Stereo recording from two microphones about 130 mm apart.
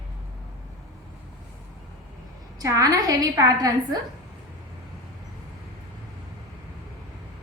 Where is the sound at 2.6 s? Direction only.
25° right (ahead or behind).